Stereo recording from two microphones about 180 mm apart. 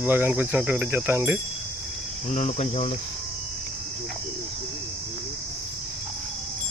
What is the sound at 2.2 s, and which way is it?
Speech, 40° left (ahead or behind).